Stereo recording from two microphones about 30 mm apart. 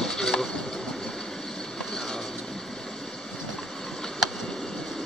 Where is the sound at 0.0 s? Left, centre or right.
Centre.